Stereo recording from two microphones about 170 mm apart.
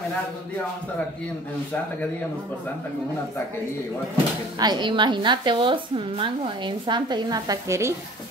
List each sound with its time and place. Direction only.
4.6 s a woman's voice: 25° right (ahead or behind)